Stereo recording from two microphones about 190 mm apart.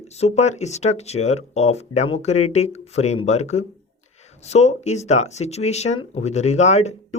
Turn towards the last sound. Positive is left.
turn(degrees=35)  # may be behind; listen again after turning